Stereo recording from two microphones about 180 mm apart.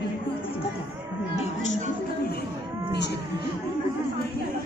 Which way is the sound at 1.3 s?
35° left (ahead or behind).